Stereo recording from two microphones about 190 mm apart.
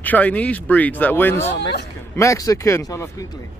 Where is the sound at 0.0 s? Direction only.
10° left (ahead or behind).